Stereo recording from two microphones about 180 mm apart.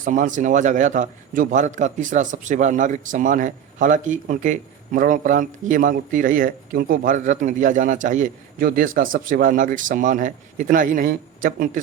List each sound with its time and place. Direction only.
0.0 s a man's voice: 45° right (ahead or behind)